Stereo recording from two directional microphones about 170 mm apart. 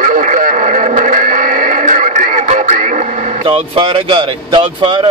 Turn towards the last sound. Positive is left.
turn(degrees=-30)  # may be behind; listen again after turning